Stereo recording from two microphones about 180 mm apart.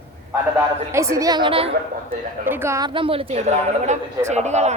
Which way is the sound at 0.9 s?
15° right (ahead or behind).